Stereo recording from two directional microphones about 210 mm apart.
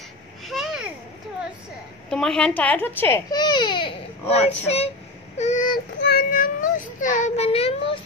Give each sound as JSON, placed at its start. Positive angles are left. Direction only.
{"t": 0.5, "sound": "babbling", "side_deg": 0}
{"t": 2.0, "sound": "speech", "side_deg": 0}
{"t": 5.4, "sound": "child singing", "side_deg": 35}
{"t": 5.9, "sound": "child singing", "side_deg": 50}